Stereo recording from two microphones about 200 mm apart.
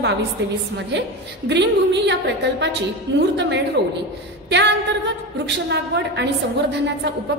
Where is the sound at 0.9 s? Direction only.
60° right (ahead or behind).